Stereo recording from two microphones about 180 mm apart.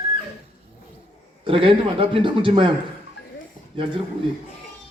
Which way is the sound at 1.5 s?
30° right (ahead or behind).